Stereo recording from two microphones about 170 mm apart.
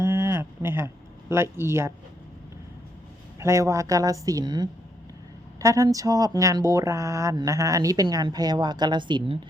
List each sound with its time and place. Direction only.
0.0 s a sound: 15° right (ahead or behind)
1.3 s speech: 15° right (ahead or behind)
3.4 s a woman's voice: 20° right (ahead or behind)